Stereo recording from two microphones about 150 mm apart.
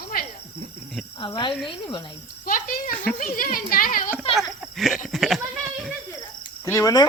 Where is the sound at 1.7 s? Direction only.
30° left (ahead or behind).